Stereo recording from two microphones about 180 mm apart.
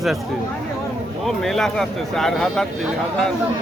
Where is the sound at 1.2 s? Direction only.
Centre (ahead or behind).